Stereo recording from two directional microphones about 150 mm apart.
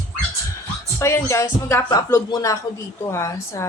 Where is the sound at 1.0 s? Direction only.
20° left (ahead or behind).